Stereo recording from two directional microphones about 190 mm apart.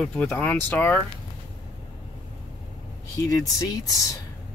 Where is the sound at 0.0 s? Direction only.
5° left (ahead or behind).